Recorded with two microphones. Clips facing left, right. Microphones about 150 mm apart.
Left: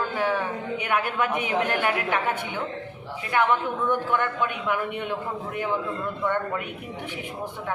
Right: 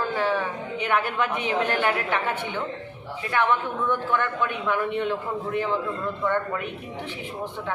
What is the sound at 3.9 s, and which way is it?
A woman's voice, 15° left (ahead or behind).